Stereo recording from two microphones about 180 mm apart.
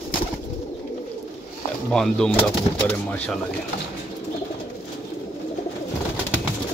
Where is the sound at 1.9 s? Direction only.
5° left (ahead or behind).